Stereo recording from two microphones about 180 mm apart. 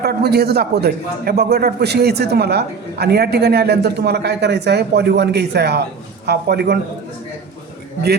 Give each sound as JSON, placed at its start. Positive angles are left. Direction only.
{"t": 0.0, "sound": "a man's voice", "side_deg": -65}